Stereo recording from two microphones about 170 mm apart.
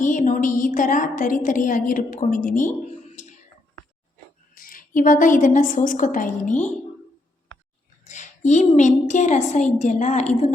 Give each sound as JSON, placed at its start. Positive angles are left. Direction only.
{"t": 0.0, "sound": "a woman's voice", "side_deg": 50}
{"t": 4.5, "sound": "a woman's voice", "side_deg": 55}
{"t": 8.0, "sound": "a woman's voice", "side_deg": 45}